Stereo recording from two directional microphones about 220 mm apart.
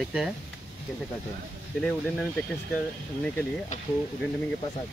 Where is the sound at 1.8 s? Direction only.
5° left (ahead or behind).